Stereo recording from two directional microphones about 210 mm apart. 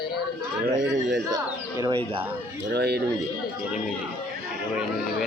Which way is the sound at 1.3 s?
15° right (ahead or behind).